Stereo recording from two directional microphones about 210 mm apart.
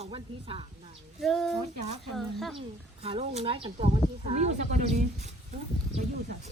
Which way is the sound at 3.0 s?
30° right (ahead or behind).